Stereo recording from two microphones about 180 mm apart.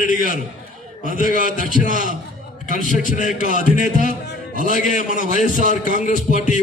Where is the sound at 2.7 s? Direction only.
50° left (ahead or behind).